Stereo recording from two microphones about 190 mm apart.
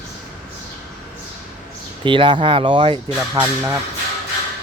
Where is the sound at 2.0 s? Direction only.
25° right (ahead or behind).